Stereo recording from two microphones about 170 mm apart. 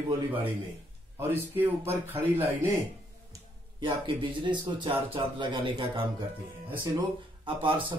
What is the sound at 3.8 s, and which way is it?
Speech, 30° right (ahead or behind).